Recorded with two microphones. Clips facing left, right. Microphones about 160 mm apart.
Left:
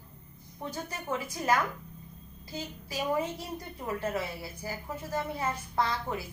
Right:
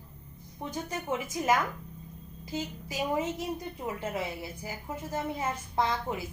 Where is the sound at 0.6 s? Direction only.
15° right (ahead or behind).